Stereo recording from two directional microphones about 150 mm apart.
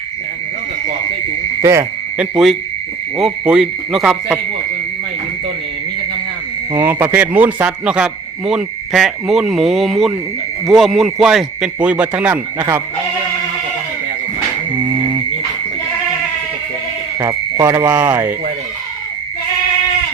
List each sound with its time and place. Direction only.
1.6 s speech: 20° right (ahead or behind)
2.1 s a man's voice: 5° right (ahead or behind)
6.7 s a man's voice: 15° right (ahead or behind)
17.2 s speech: 20° right (ahead or behind)